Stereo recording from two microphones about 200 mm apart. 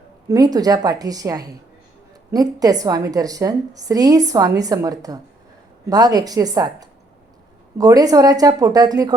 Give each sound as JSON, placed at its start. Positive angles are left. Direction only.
{"t": 0.3, "sound": "a woman's voice", "side_deg": -20}